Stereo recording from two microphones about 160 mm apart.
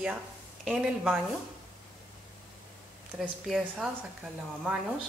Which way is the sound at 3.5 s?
5° right (ahead or behind).